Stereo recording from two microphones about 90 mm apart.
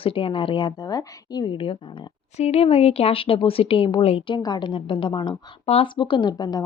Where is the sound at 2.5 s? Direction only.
90° left.